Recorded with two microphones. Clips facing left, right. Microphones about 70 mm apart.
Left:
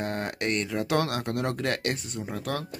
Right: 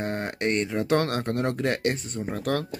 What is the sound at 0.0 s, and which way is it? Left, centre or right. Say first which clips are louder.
Speech: right 2 dB; right.